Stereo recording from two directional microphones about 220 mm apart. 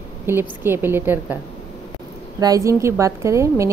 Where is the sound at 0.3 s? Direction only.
10° right (ahead or behind).